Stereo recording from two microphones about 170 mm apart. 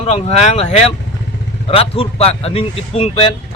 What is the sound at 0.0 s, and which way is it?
Speech, 40° left (ahead or behind).